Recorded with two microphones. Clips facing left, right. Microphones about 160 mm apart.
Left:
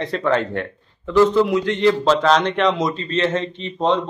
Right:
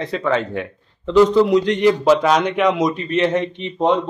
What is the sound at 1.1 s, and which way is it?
A man's voice, 15° right (ahead or behind).